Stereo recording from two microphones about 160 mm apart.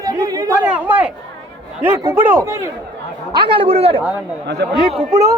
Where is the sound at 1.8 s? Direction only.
15° right (ahead or behind).